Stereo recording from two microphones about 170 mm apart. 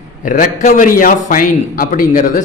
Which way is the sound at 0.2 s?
50° left (ahead or behind).